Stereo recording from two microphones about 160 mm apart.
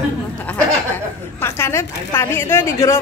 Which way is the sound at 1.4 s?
15° left (ahead or behind).